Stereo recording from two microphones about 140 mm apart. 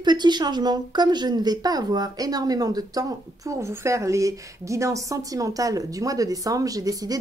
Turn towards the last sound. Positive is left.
turn(degrees=-25)  # may be behind; listen again after turning